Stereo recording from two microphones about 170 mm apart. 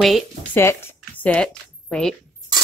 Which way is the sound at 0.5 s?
15° left (ahead or behind).